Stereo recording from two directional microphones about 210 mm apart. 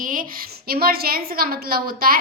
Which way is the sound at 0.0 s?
40° right (ahead or behind).